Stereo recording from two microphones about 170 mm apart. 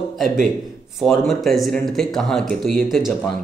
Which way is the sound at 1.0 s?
Centre (ahead or behind).